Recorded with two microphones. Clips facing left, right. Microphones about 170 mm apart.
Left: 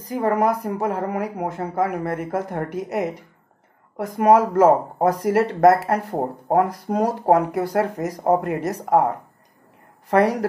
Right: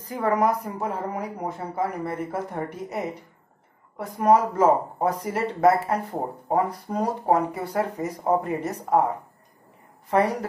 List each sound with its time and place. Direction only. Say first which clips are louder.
0.3 s speech: left 2 dB; 60° left (ahead or behind); by 6.1 s 85° left
6.1 s speech: left 6 dB; 70° left (ahead or behind)
10.0 s a woman's voice: left 4 dB; 90° left